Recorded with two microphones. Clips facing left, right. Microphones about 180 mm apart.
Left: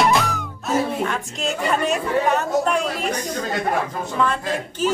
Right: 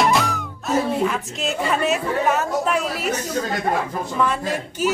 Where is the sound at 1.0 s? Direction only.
Centre (ahead or behind).